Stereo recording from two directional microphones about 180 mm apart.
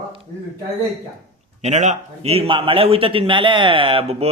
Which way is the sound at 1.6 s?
40° right (ahead or behind).